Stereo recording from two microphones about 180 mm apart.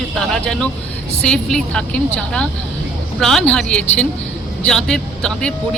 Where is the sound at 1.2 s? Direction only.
5° left (ahead or behind).